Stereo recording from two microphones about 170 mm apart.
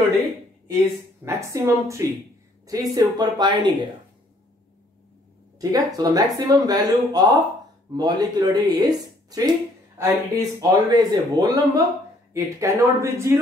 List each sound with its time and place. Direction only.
1.2 s a woman's voice: 15° right (ahead or behind)
5.6 s speech: 20° right (ahead or behind)